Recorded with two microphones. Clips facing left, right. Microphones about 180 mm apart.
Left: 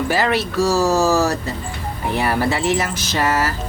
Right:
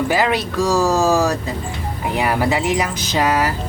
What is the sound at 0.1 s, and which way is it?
Speech, 15° right (ahead or behind).